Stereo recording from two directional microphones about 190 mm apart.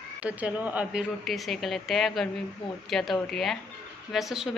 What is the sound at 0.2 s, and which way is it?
A woman's voice, 5° right (ahead or behind).